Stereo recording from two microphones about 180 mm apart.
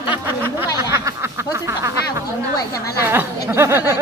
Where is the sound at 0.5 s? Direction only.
15° right (ahead or behind).